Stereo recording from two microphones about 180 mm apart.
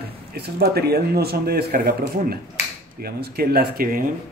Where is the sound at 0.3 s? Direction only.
60° right (ahead or behind).